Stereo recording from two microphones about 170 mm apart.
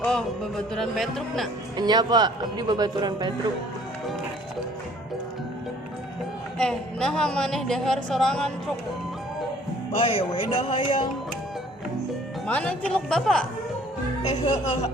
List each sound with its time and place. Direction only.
0.0 s speech: 5° left (ahead or behind)
1.7 s speech: 25° right (ahead or behind)
6.6 s speech: 5° left (ahead or behind)
10.0 s speech: 30° left (ahead or behind)
12.5 s speech: 5° left (ahead or behind)
14.2 s music: 45° left (ahead or behind)